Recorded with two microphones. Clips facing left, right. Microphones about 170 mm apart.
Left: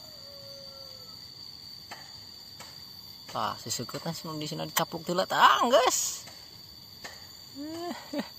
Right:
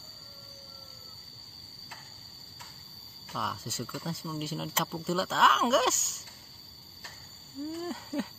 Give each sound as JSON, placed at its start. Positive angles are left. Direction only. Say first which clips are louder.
{"t": 3.3, "sound": "speech", "louder": "left 2 dB", "side_deg": 0}
{"t": 7.6, "sound": "speech", "louder": "even", "side_deg": 0}